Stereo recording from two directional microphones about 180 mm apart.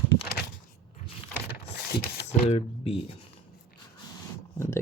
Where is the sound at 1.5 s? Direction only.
65° left (ahead or behind).